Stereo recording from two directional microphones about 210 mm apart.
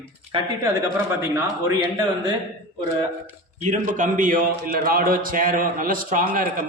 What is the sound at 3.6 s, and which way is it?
A man's voice, 35° right (ahead or behind).